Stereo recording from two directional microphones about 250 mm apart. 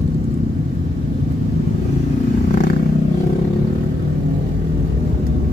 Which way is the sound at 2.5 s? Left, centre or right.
Left.